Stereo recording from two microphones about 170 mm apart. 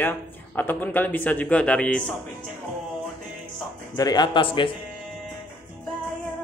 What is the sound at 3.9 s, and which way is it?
Speech, 25° left (ahead or behind).